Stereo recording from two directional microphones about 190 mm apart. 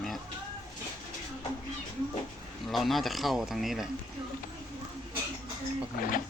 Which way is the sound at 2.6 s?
Centre (ahead or behind).